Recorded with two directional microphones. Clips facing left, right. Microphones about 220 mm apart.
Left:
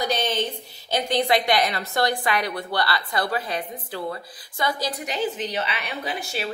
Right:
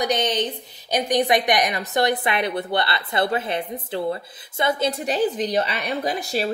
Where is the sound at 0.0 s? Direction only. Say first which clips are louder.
Right 2 dB; 20° right (ahead or behind).